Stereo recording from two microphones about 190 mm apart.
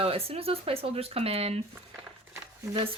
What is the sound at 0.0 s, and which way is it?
Speech, 30° right (ahead or behind).